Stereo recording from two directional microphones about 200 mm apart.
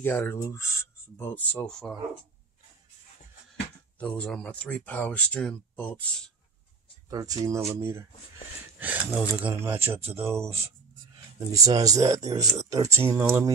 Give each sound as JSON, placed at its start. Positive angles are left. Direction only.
{"t": 0.0, "sound": "speech", "side_deg": 10}
{"t": 4.0, "sound": "speech", "side_deg": 5}
{"t": 7.1, "sound": "speech", "side_deg": -15}
{"t": 8.7, "sound": "speech", "side_deg": -10}